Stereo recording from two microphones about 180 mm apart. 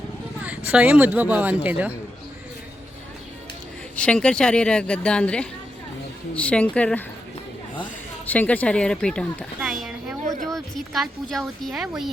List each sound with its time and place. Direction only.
0.4 s speech: 5° right (ahead or behind)
3.9 s a woman's voice: 5° left (ahead or behind)
8.3 s speech: 10° left (ahead or behind)